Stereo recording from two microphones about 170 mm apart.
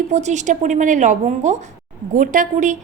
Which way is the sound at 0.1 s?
45° right (ahead or behind).